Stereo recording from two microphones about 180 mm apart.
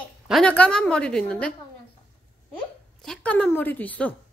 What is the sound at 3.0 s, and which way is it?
A woman's voice, 5° left (ahead or behind).